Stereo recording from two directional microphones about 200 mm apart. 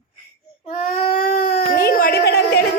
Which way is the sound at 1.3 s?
35° left (ahead or behind).